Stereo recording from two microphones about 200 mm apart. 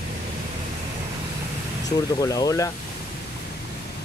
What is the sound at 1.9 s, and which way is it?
Speech, 20° left (ahead or behind).